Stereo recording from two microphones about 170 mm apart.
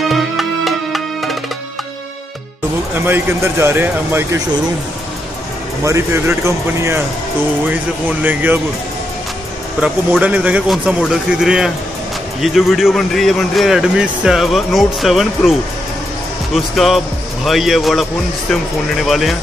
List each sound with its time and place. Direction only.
0.1 s music: centre (ahead or behind)
2.9 s speech: 10° right (ahead or behind)
5.9 s speech: 15° right (ahead or behind)
9.8 s speech: 5° right (ahead or behind)
16.5 s speech: centre (ahead or behind)
19.0 s speech: centre (ahead or behind)